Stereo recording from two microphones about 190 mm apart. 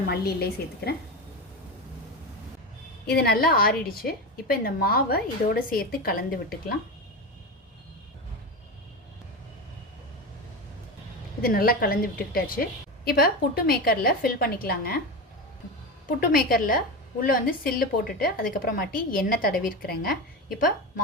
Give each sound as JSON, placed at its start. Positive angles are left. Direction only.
{"t": 0.1, "sound": "a woman's voice", "side_deg": 55}
{"t": 3.1, "sound": "a woman's voice", "side_deg": 55}
{"t": 11.4, "sound": "a woman's voice", "side_deg": 50}
{"t": 16.0, "sound": "a woman's voice", "side_deg": 50}